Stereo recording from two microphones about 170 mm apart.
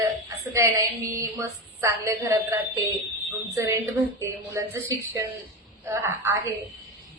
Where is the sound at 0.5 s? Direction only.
15° right (ahead or behind).